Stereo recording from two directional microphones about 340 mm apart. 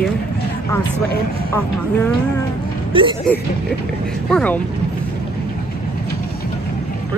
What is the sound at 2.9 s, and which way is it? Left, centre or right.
Speech, centre.